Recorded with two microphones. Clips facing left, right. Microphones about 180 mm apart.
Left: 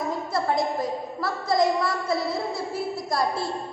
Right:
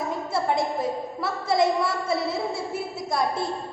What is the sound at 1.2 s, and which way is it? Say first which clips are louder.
Speech: even; 25° right (ahead or behind).